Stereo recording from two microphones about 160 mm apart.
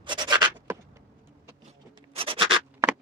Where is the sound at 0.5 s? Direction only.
15° right (ahead or behind).